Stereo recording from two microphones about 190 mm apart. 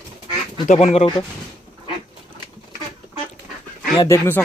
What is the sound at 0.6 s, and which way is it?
Speech, 35° left (ahead or behind).